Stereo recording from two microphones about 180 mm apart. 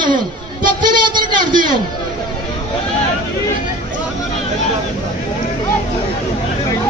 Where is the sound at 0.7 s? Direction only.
25° right (ahead or behind).